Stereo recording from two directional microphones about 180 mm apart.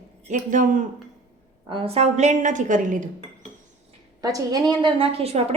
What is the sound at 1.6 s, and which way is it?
A woman's voice, 30° right (ahead or behind).